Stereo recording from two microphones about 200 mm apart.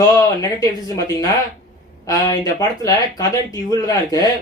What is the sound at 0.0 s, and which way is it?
A man's voice, 20° left (ahead or behind).